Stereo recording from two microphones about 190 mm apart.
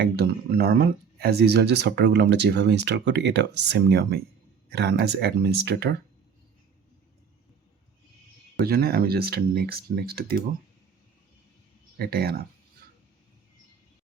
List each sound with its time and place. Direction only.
0.0 s speech: 55° right (ahead or behind)
8.5 s speech: 55° right (ahead or behind)
11.9 s speech: 55° right (ahead or behind)